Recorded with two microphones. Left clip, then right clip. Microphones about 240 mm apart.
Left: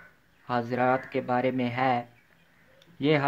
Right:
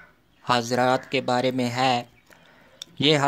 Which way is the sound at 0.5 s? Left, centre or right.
Right.